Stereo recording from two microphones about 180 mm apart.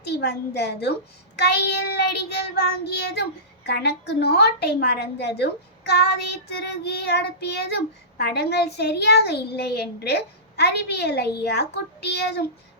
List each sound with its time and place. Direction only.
0.0 s child singing: 65° left (ahead or behind)